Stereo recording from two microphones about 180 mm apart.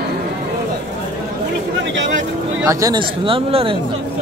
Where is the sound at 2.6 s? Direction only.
20° right (ahead or behind).